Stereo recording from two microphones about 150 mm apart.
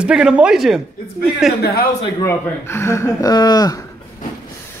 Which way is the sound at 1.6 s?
90° left.